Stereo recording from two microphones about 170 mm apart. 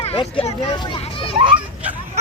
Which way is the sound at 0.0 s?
35° left (ahead or behind).